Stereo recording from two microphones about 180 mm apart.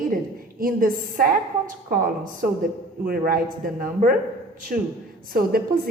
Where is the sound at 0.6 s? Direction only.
50° right (ahead or behind).